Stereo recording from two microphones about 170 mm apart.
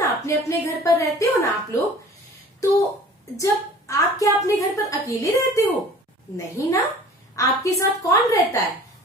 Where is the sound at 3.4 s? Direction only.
20° left (ahead or behind).